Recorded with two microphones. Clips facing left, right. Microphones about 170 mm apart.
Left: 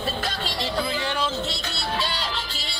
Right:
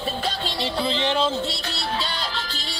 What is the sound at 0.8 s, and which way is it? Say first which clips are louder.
Speech: right 5 dB; 25° right (ahead or behind).